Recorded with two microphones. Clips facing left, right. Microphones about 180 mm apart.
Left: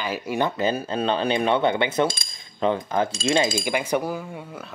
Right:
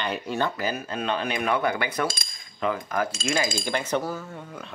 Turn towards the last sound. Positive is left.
turn(degrees=15)  # may be behind; listen again after turning